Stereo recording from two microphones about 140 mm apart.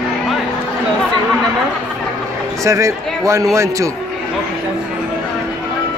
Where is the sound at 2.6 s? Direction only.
20° right (ahead or behind).